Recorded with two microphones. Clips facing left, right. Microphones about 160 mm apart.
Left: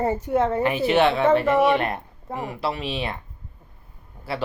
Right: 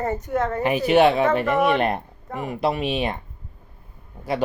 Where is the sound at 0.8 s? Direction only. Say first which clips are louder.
Right 3 dB; 15° right (ahead or behind).